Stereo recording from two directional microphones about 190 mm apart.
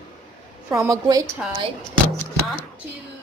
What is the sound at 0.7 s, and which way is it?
Speech, 20° right (ahead or behind).